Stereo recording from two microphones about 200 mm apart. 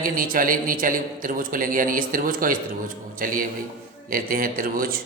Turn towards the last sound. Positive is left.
turn(degrees=-45)  # may be behind; listen again after turning